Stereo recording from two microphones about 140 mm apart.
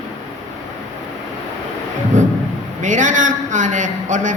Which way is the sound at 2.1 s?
65° right (ahead or behind).